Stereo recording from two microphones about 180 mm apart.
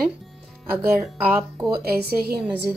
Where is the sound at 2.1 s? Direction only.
60° right (ahead or behind).